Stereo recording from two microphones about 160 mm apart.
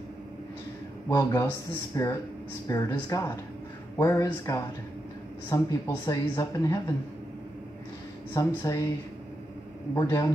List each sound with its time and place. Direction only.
1.0 s speech: 25° left (ahead or behind)
8.3 s speech: 20° left (ahead or behind)
9.9 s speech: 25° left (ahead or behind)